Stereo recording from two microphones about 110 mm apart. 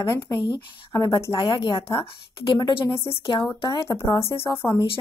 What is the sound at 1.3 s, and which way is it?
Speech, 50° left (ahead or behind).